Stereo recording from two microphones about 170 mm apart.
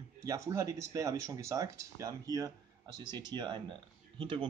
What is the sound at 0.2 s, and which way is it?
Speech, 20° right (ahead or behind).